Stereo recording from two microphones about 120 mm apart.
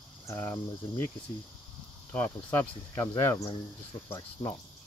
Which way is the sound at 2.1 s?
15° left (ahead or behind).